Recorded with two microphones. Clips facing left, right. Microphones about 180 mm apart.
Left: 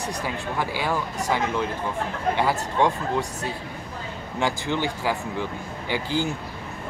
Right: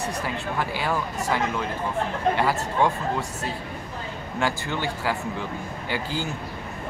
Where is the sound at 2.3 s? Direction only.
15° left (ahead or behind).